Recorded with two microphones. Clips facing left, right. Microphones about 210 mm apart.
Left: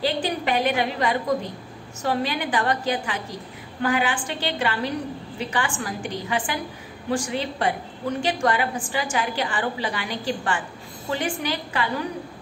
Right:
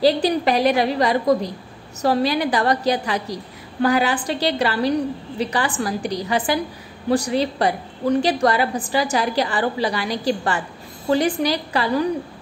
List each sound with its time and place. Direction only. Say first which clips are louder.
0.0 s a woman's voice: right 8 dB; 35° right (ahead or behind)